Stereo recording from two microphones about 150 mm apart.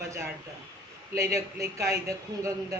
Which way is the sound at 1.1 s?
20° right (ahead or behind).